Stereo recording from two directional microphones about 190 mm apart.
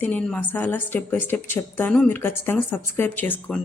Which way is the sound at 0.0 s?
5° left (ahead or behind).